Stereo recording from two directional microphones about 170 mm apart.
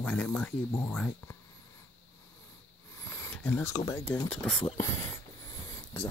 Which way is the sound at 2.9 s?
15° left (ahead or behind).